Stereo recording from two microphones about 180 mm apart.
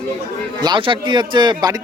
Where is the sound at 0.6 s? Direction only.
25° right (ahead or behind).